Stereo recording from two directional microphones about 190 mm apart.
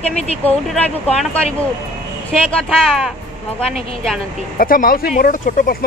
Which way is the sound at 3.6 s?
30° left (ahead or behind).